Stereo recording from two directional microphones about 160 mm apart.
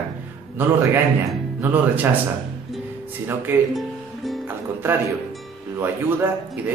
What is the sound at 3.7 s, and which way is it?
Music, centre (ahead or behind).